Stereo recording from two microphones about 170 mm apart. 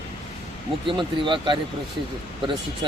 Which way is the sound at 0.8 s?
30° right (ahead or behind).